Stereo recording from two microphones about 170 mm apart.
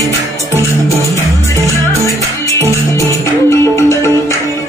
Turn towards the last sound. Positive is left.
turn(degrees=15)  # may be behind; listen again after turning